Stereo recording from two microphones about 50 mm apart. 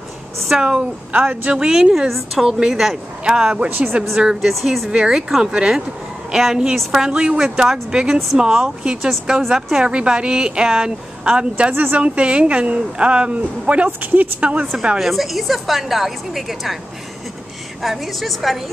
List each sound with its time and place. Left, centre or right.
0.5 s speech: centre
1.1 s speech: right
1.5 s speech: centre
3.7 s speech: right
4.4 s a woman's voice: centre
5.5 s a woman's voice: centre
11.7 s a woman's voice: right
12.0 s a woman's voice: right
13.8 s a woman's voice: right
14.4 s a woman's voice: right
15.0 s a woman's voice: centre
17.8 s a woman's voice: centre